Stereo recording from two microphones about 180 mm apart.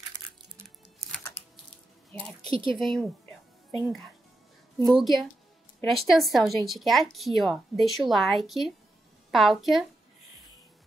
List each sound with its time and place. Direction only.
2.5 s speech: 30° right (ahead or behind)
2.8 s a woman's voice: 5° left (ahead or behind)
4.8 s speech: centre (ahead or behind)